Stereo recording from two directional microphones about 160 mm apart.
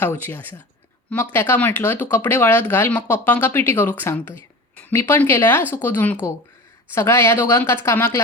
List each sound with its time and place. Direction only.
0.0 s speech: 10° left (ahead or behind)